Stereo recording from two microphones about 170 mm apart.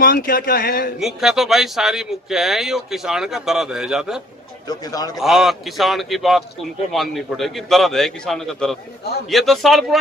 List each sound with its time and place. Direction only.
0.0 s speech: 55° left (ahead or behind)
0.9 s a man's voice: centre (ahead or behind)
4.6 s speech: 20° left (ahead or behind)
5.2 s a man's voice: centre (ahead or behind)